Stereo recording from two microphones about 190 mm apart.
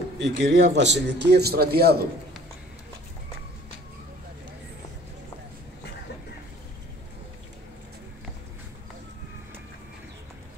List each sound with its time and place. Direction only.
0.2 s a man's voice: 70° right (ahead or behind)